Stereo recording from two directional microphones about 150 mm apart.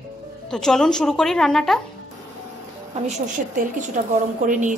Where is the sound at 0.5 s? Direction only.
5° left (ahead or behind).